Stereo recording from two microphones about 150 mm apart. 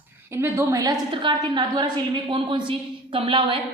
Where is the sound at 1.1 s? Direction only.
30° right (ahead or behind).